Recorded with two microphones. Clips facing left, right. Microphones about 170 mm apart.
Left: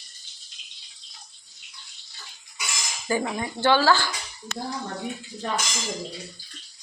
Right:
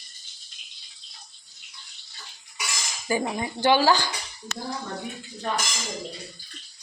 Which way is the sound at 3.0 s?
15° right (ahead or behind).